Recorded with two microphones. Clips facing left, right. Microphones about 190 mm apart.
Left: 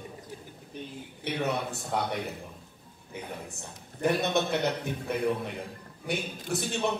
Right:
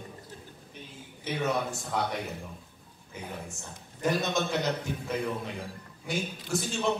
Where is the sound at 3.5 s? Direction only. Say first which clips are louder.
Left 1 dB; 60° left (ahead or behind).